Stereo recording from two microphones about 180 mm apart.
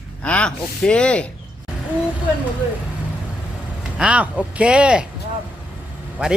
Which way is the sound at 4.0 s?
5° right (ahead or behind).